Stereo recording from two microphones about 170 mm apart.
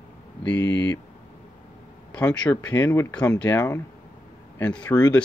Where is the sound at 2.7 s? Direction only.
15° left (ahead or behind).